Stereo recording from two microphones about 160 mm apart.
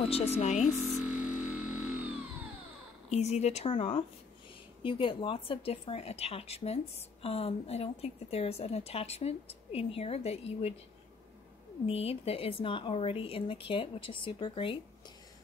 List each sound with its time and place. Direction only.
0.1 s speech: 40° left (ahead or behind)
0.9 s a sound: 5° right (ahead or behind)
3.1 s speech: 45° left (ahead or behind)
11.8 s speech: 35° left (ahead or behind)